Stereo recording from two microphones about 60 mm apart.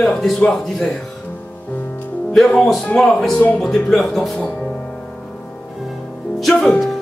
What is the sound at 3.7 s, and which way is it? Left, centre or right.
Speech, centre.